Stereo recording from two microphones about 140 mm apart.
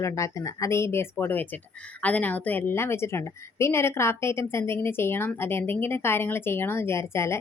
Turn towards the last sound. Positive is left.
turn(degrees=20)  # may be behind; listen again after turning